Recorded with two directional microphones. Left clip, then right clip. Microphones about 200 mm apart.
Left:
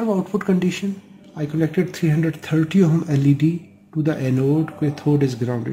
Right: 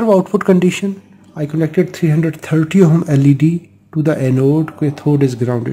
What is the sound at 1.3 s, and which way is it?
Speech, 35° right (ahead or behind).